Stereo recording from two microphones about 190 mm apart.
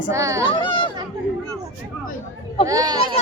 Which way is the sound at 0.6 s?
25° left (ahead or behind).